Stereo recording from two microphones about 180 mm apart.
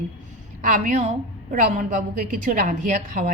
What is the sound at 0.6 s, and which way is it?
Speech, 45° right (ahead or behind).